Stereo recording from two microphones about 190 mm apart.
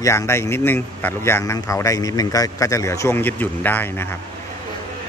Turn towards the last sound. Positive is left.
turn(degrees=10)  # may be behind; listen again after turning